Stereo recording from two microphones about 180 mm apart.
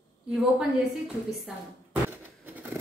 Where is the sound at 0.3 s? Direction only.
Centre (ahead or behind).